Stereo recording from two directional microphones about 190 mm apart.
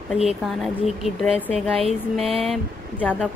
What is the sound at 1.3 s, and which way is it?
Speech, 30° right (ahead or behind).